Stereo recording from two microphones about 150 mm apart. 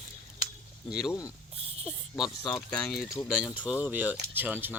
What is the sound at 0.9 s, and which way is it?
Speech, 5° right (ahead or behind).